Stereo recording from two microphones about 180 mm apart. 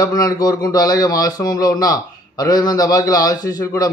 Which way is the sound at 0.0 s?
20° left (ahead or behind).